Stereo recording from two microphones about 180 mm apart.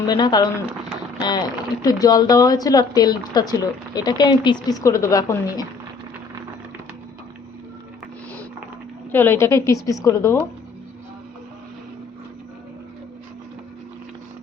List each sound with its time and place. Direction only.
0.1 s speech: 25° left (ahead or behind)
9.1 s speech: 15° left (ahead or behind)